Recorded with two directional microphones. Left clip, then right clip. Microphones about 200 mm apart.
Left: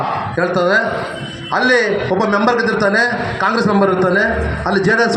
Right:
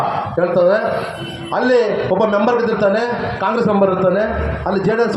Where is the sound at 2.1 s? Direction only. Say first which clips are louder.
Even; 35° left (ahead or behind).